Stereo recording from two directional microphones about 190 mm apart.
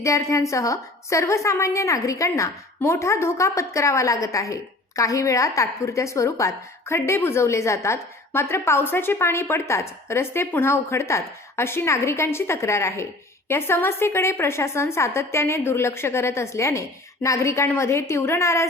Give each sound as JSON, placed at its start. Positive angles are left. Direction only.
{"t": 0.0, "sound": "a woman's voice", "side_deg": 15}